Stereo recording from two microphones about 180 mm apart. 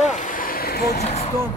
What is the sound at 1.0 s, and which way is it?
Speech, 35° left (ahead or behind).